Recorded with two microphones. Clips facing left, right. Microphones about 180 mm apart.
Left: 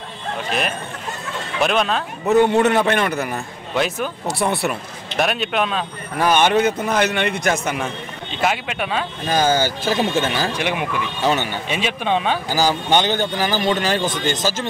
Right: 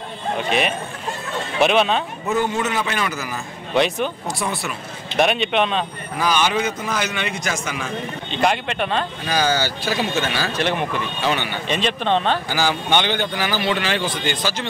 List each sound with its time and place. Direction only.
0.5 s speech: centre (ahead or behind)
2.2 s a man's voice: 65° left (ahead or behind)
3.7 s speech: centre (ahead or behind)
4.3 s a man's voice: 65° left (ahead or behind)
5.1 s a man's voice: centre (ahead or behind)
6.1 s a man's voice: 55° left (ahead or behind)
8.3 s speech: 5° left (ahead or behind)
9.3 s a man's voice: 50° left (ahead or behind)
10.4 s speech: 10° left (ahead or behind)
11.2 s a man's voice: 40° left (ahead or behind)
11.6 s speech: 10° left (ahead or behind)
12.4 s a man's voice: 40° left (ahead or behind)